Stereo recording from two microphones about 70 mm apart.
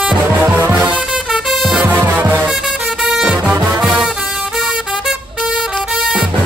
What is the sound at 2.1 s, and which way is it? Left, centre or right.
Music, right.